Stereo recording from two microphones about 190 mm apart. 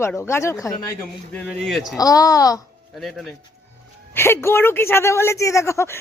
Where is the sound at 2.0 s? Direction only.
20° left (ahead or behind).